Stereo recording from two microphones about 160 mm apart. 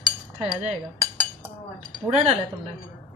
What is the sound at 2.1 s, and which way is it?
Speech, 40° right (ahead or behind).